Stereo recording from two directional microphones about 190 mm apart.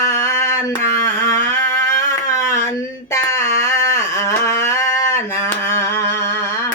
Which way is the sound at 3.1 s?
15° left (ahead or behind).